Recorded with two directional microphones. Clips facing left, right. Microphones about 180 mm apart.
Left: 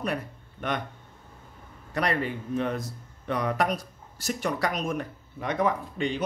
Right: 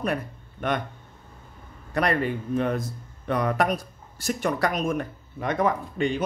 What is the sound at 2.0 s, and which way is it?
A man's voice, 50° right (ahead or behind).